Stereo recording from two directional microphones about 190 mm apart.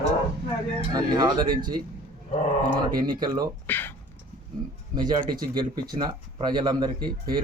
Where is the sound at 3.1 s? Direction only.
20° right (ahead or behind).